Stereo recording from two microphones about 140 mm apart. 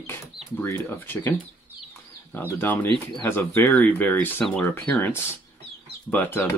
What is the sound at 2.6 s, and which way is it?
Speech, 15° left (ahead or behind).